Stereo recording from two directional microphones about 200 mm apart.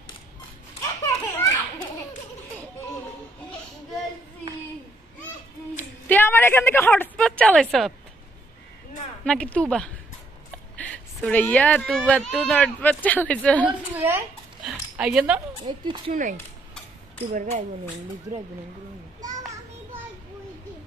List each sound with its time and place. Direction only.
1.0 s children playing: 20° left (ahead or behind)
5.8 s a woman's voice: 10° left (ahead or behind)
9.2 s speech: 5° left (ahead or behind)
13.7 s speech: 10° right (ahead or behind)
15.6 s speech: 25° right (ahead or behind)
16.1 s speech: 40° right (ahead or behind)